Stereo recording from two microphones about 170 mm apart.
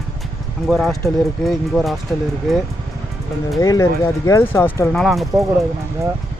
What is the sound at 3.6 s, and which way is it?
Speech, 20° left (ahead or behind).